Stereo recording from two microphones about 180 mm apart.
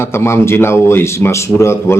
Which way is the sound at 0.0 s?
15° left (ahead or behind).